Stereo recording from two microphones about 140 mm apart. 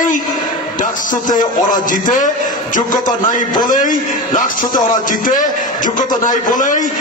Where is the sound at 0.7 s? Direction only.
70° left (ahead or behind).